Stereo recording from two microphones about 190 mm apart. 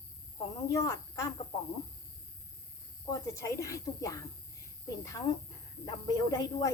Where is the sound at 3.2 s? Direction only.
15° left (ahead or behind).